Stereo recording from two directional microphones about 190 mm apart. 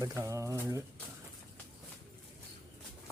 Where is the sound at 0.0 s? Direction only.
15° right (ahead or behind).